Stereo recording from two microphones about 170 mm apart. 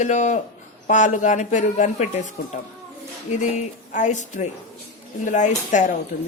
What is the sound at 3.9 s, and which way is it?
Speech, 45° left (ahead or behind).